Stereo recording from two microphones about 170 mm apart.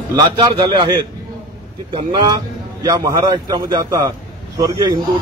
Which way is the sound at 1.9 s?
25° right (ahead or behind).